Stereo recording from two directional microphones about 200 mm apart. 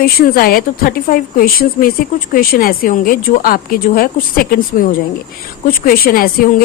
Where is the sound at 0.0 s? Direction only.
50° left (ahead or behind).